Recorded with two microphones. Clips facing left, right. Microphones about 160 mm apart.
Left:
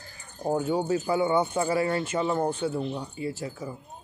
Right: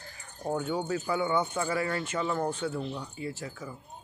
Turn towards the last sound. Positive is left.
turn(degrees=30)  # may be behind; listen again after turning